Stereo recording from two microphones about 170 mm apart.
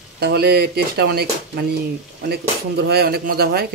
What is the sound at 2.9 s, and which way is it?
Speech, 70° right (ahead or behind).